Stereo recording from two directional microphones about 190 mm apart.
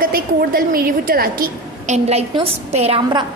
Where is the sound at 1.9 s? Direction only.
35° right (ahead or behind).